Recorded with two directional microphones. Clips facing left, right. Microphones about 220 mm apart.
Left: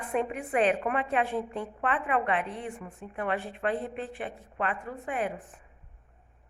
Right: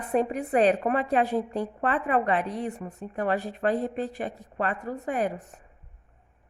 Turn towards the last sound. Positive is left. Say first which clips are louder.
# right 4 dB
turn(degrees=-40)  # may be behind; listen again after turning